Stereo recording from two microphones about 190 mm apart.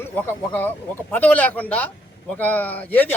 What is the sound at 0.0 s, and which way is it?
A man's voice, 10° left (ahead or behind).